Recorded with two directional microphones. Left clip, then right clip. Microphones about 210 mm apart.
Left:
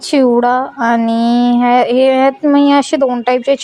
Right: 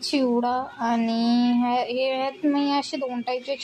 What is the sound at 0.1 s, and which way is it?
A woman's voice, 35° left (ahead or behind).